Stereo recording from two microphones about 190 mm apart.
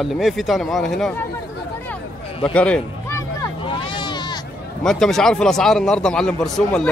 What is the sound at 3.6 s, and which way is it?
Hubbub, 25° left (ahead or behind).